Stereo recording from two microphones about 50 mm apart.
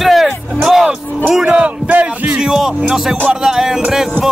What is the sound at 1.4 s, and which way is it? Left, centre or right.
Music, right.